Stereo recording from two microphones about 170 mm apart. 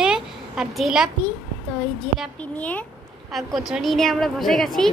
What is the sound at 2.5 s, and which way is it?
A woman's voice, 10° left (ahead or behind).